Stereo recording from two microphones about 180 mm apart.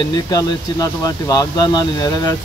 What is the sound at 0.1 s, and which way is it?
Speech, 20° left (ahead or behind).